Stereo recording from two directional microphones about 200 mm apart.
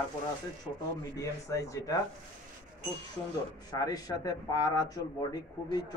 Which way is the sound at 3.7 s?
20° left (ahead or behind).